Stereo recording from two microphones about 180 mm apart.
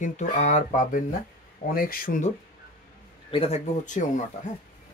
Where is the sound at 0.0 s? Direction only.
40° left (ahead or behind).